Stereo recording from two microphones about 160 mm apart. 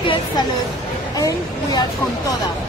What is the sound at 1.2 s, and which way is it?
Speech, 25° left (ahead or behind).